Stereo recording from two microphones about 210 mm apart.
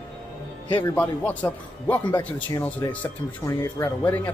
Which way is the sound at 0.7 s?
20° left (ahead or behind).